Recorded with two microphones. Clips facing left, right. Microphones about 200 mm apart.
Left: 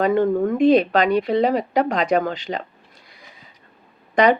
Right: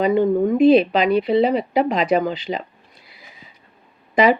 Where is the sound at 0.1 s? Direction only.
10° right (ahead or behind).